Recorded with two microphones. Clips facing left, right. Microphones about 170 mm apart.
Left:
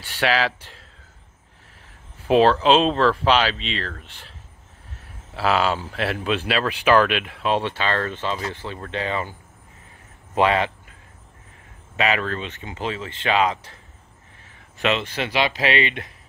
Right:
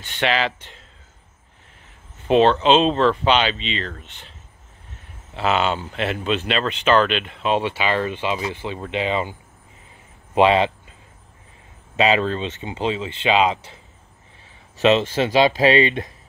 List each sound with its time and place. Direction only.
0.0 s speech: 5° left (ahead or behind)
2.2 s speech: 5° left (ahead or behind); by 9.3 s 20° right (ahead or behind)
10.3 s speech: 20° right (ahead or behind)
12.0 s speech: 25° right (ahead or behind)
14.9 s speech: 35° right (ahead or behind)